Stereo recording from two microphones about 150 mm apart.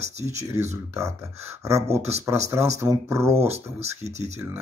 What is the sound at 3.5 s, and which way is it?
Speech, 45° right (ahead or behind).